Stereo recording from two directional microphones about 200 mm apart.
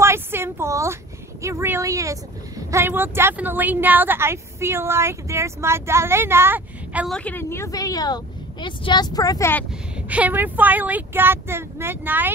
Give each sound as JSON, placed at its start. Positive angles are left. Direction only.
{"t": 0.0, "sound": "a sound", "side_deg": -10}
{"t": 1.4, "sound": "speech", "side_deg": -15}
{"t": 7.2, "sound": "speech", "side_deg": 10}
{"t": 9.9, "sound": "speech", "side_deg": -5}